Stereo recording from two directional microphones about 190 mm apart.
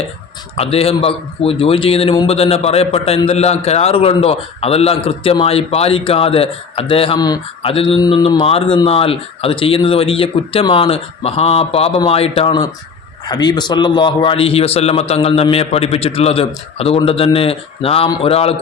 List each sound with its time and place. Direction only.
0.5 s a man's voice: 30° left (ahead or behind)